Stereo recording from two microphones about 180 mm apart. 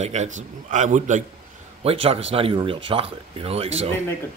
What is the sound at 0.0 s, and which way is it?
A man's voice, 40° right (ahead or behind).